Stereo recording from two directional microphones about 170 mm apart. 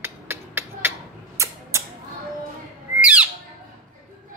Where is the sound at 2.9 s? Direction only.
5° right (ahead or behind).